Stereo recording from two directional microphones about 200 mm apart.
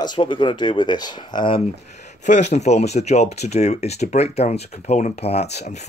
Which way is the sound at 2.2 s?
35° left (ahead or behind).